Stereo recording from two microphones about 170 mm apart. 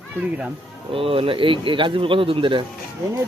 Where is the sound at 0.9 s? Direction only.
30° right (ahead or behind).